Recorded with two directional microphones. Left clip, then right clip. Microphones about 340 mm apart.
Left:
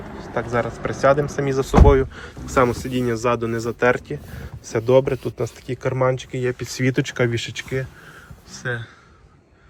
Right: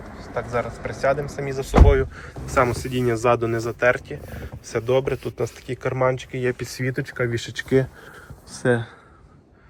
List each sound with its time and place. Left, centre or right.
0.2 s speech: left; by 8.9 s centre